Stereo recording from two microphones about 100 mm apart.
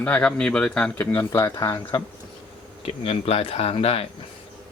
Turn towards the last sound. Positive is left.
turn(degrees=75)  # may be behind; listen again after turning